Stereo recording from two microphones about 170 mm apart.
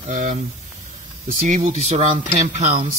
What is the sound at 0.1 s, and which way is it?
Speech, 45° right (ahead or behind).